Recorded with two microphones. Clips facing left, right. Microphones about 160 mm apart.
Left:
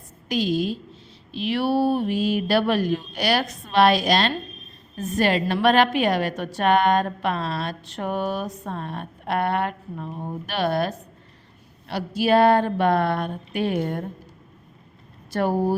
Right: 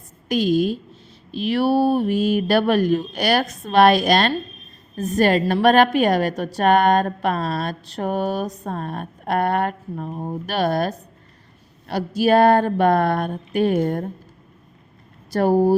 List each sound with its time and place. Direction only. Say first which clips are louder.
0.3 s a woman's voice: right 4 dB; 50° right (ahead or behind)
15.3 s speech: right 6 dB; 40° right (ahead or behind)